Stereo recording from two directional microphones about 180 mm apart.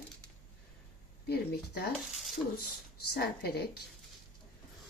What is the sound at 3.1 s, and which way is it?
Speech, 60° left (ahead or behind).